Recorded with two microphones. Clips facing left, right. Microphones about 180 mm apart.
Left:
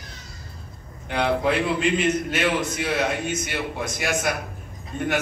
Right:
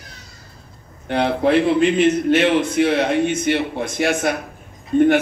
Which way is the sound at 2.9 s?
60° right (ahead or behind).